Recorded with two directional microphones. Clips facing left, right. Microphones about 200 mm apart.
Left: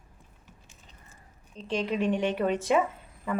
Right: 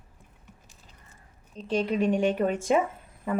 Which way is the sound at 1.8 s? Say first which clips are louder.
Right 1 dB; 10° right (ahead or behind).